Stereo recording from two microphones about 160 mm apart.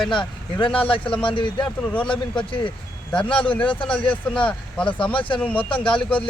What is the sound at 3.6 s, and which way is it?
Speech, 30° left (ahead or behind).